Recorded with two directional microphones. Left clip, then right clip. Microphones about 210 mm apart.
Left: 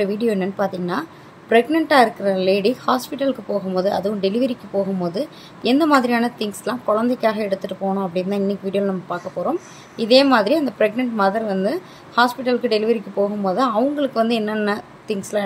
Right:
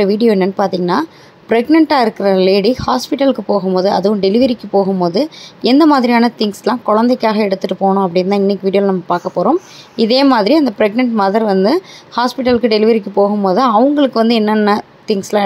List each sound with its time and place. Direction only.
0.0 s a woman's voice: 30° right (ahead or behind)